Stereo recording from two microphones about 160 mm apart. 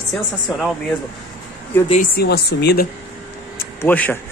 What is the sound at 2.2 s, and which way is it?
Speech, 90° left.